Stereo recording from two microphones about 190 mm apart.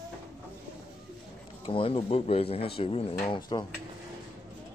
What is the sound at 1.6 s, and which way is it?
Speech, 30° left (ahead or behind).